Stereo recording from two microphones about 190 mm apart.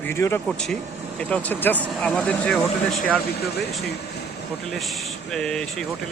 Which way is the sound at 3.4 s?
60° left (ahead or behind).